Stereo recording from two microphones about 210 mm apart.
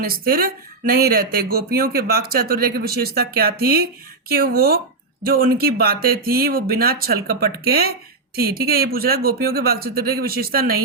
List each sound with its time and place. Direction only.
0.0 s speech: 45° right (ahead or behind)